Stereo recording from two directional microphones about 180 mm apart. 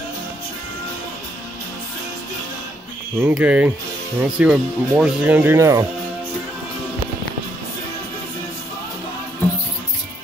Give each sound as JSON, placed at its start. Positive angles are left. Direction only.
{"t": 3.2, "sound": "speech", "side_deg": -10}